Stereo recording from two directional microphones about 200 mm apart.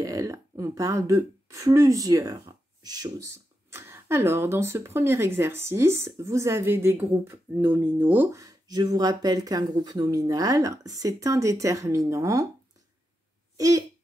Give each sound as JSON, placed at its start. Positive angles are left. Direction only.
{"t": 0.0, "sound": "speech", "side_deg": -15}
{"t": 13.6, "sound": "speech", "side_deg": -15}